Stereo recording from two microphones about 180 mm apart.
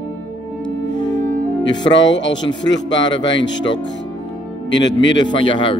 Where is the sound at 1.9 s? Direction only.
90° left.